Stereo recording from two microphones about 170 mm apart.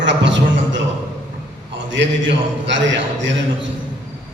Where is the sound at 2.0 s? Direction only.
90° right.